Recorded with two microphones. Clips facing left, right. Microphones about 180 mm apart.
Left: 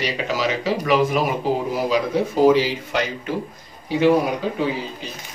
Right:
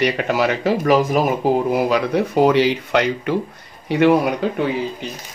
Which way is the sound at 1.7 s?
65° right (ahead or behind).